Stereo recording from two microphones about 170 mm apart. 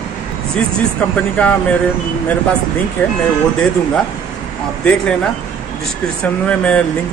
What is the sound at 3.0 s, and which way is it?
Speech, 10° left (ahead or behind).